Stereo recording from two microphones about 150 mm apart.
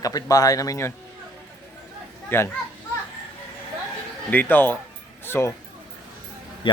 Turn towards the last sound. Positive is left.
turn(degrees=35)  # may be behind; listen again after turning